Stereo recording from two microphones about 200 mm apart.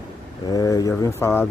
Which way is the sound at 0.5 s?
15° left (ahead or behind).